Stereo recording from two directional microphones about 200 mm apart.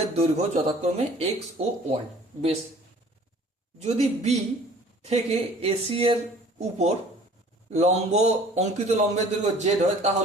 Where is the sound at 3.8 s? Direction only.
35° right (ahead or behind).